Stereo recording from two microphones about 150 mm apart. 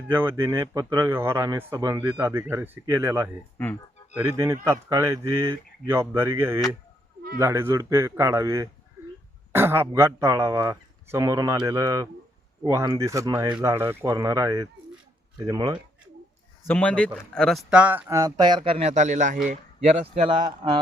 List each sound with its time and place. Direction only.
0.1 s speech: 15° right (ahead or behind)
3.6 s speech: 10° left (ahead or behind)
4.1 s speech: 15° right (ahead or behind)
16.6 s speech: 10° left (ahead or behind); by 19.4 s 55° right (ahead or behind)
19.5 s speech: 45° right (ahead or behind)